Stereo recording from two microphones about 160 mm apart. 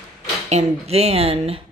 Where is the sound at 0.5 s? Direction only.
40° right (ahead or behind).